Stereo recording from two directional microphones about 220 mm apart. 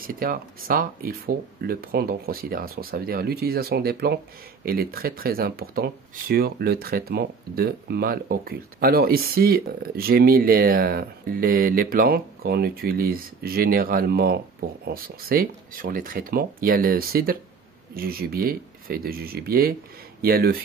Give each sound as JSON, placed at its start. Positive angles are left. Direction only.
{"t": 0.0, "sound": "speech", "side_deg": -40}